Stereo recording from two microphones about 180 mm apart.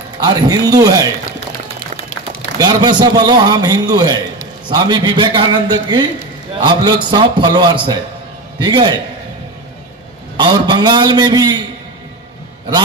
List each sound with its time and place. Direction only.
0.2 s a man's voice: 20° right (ahead or behind)
2.6 s a man's voice: 25° right (ahead or behind)
10.4 s a man's voice: 25° right (ahead or behind)